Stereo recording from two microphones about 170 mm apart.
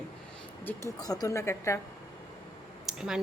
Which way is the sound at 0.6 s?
10° left (ahead or behind).